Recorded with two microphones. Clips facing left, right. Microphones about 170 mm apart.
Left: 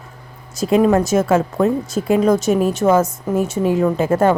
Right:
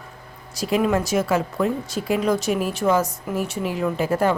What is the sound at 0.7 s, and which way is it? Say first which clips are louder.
Speech: left 6 dB; 40° left (ahead or behind).